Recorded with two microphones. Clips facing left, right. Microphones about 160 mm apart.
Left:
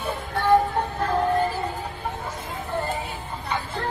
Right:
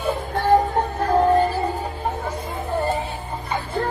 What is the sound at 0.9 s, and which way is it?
Music, 40° right (ahead or behind).